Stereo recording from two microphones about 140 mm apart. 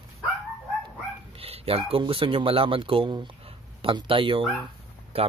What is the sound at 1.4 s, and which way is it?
Speech, 45° right (ahead or behind).